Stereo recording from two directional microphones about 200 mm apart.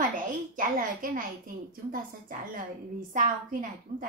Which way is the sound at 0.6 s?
45° right (ahead or behind).